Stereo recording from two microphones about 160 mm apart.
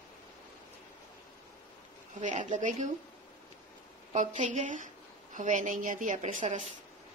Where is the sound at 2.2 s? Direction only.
50° right (ahead or behind).